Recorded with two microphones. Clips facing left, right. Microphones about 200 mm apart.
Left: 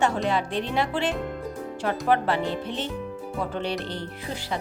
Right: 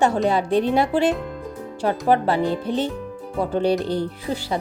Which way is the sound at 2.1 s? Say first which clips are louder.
Right 4 dB; 35° right (ahead or behind).